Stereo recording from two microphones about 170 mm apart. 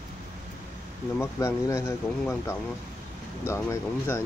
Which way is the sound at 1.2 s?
20° left (ahead or behind).